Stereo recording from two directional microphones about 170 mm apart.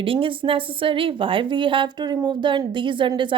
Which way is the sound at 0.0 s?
30° right (ahead or behind).